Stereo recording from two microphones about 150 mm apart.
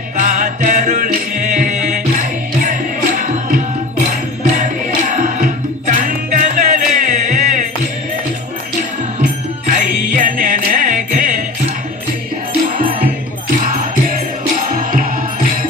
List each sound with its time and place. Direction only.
0.2 s music: 55° right (ahead or behind)
4.1 s music: 55° right (ahead or behind)
9.2 s music: 60° right (ahead or behind)
12.6 s music: 75° right (ahead or behind)